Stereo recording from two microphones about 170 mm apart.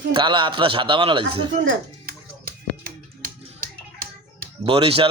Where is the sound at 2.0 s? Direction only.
60° right (ahead or behind).